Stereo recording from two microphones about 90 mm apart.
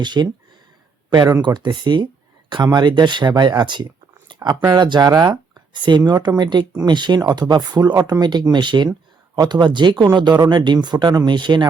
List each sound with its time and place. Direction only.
0.0 s speech: 55° right (ahead or behind)
1.4 s speech: 55° right (ahead or behind)
4.4 s speech: 45° right (ahead or behind)
11.3 s speech: 60° right (ahead or behind)